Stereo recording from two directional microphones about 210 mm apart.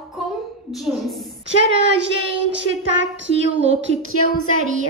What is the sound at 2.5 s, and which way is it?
Speech, 60° right (ahead or behind).